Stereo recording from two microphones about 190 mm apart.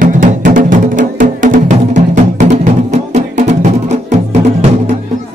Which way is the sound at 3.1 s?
35° right (ahead or behind).